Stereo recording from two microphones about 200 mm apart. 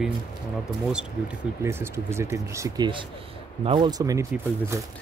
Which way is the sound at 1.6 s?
10° right (ahead or behind).